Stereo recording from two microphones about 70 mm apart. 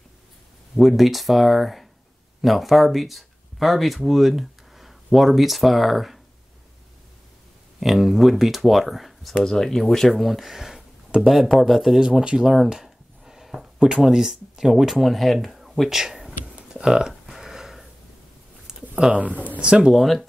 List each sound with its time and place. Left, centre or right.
0.7 s speech: centre
7.8 s speech: centre
16.5 s a sound: centre
19.1 s speech: right
20.0 s speech: centre